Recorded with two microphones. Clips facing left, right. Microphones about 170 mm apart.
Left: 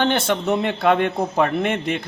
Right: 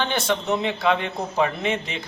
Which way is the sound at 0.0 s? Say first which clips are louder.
Left 4 dB; 55° left (ahead or behind).